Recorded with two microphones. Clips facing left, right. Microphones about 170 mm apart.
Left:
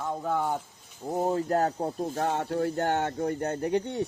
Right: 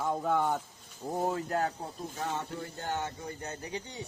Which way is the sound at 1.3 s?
40° left (ahead or behind).